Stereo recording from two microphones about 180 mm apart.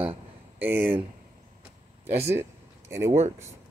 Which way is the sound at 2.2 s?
15° right (ahead or behind).